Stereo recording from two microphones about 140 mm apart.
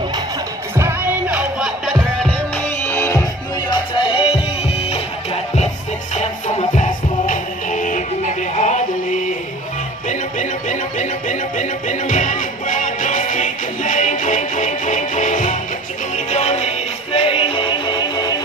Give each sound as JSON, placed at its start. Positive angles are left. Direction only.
{"t": 0.7, "sound": "music", "side_deg": -15}
{"t": 2.8, "sound": "music", "side_deg": 15}
{"t": 3.7, "sound": "music", "side_deg": 35}